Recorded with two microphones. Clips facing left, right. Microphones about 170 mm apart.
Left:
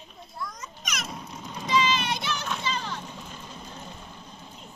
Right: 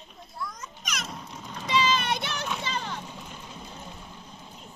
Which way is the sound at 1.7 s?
30° right (ahead or behind).